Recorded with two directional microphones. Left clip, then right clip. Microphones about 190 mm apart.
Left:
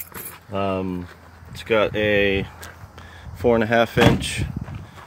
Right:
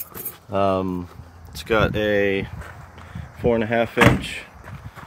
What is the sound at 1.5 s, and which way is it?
Speech, centre (ahead or behind).